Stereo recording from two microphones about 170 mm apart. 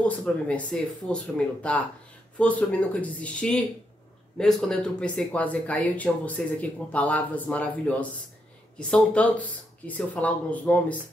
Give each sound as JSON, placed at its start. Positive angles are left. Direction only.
{"t": 0.0, "sound": "speech", "side_deg": 10}